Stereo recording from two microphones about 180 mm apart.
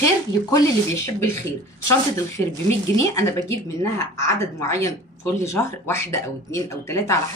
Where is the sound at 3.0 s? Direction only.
15° left (ahead or behind).